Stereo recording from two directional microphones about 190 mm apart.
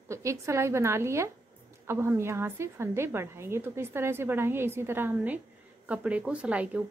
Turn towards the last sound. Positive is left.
turn(degrees=-5)  # may be behind; listen again after turning